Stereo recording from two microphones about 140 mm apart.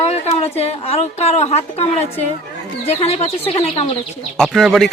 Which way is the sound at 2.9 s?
45° left (ahead or behind).